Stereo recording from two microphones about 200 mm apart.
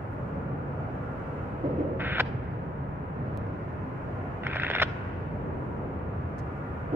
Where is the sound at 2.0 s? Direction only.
10° right (ahead or behind).